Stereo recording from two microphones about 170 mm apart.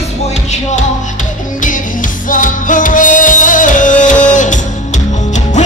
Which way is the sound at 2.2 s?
50° left (ahead or behind).